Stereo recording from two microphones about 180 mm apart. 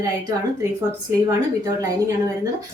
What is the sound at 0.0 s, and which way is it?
A woman's voice, 15° right (ahead or behind).